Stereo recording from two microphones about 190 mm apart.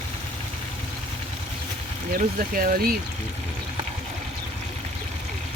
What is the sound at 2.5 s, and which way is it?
Speech, 50° right (ahead or behind).